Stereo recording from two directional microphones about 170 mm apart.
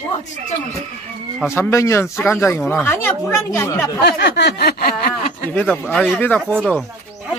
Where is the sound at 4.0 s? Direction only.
75° left (ahead or behind); by 5.5 s 55° left (ahead or behind).